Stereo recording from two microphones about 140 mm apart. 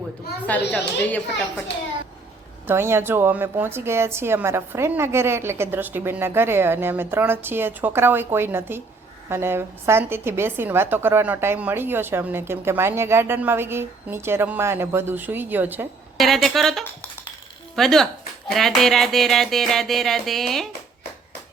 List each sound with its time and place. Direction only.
0.4 s speech: 10° left (ahead or behind)
2.6 s a woman's voice: 15° right (ahead or behind)
16.1 s speech: centre (ahead or behind)